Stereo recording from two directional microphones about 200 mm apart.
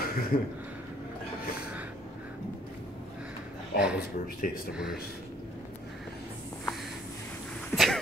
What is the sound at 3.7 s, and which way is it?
Speech, 5° right (ahead or behind).